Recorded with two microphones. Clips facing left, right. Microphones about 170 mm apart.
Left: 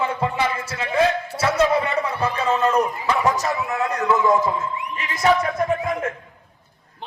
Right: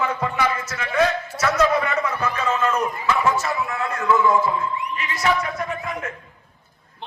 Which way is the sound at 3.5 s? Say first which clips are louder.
Left 2 dB; 20° left (ahead or behind).